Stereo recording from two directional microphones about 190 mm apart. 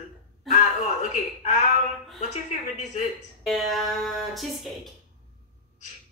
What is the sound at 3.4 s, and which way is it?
Speech, centre (ahead or behind).